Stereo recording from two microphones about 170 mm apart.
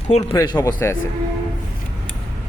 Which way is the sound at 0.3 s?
20° left (ahead or behind).